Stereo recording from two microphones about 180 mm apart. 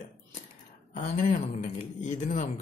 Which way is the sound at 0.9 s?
45° left (ahead or behind).